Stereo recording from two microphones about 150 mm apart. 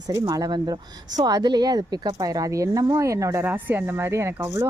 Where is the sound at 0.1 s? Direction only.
25° right (ahead or behind).